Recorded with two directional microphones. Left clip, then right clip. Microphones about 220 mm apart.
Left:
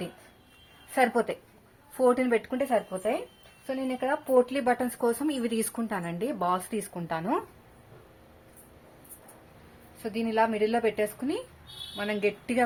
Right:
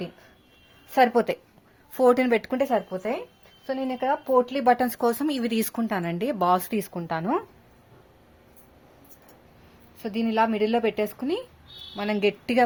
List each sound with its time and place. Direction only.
0.9 s speech: 40° right (ahead or behind)
6.9 s speech: 30° right (ahead or behind)
10.0 s a woman's voice: 40° right (ahead or behind)